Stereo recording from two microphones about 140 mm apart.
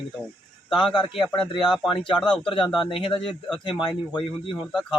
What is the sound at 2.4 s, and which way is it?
Speech, 35° left (ahead or behind).